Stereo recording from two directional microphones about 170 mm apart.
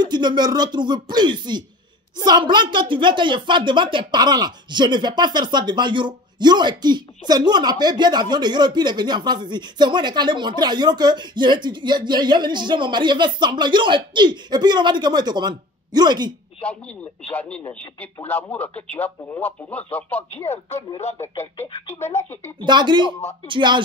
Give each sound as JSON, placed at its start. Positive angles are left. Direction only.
{"t": 0.0, "sound": "speech", "side_deg": -25}
{"t": 17.3, "sound": "speech", "side_deg": 10}
{"t": 22.0, "sound": "speech", "side_deg": 15}
{"t": 22.7, "sound": "speech", "side_deg": -25}